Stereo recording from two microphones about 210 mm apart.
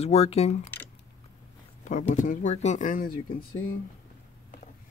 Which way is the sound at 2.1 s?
35° left (ahead or behind).